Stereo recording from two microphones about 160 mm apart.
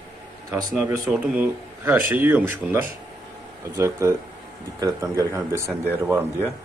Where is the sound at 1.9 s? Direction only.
10° right (ahead or behind).